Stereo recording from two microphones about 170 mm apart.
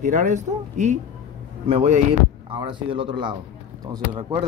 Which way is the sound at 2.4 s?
30° right (ahead or behind).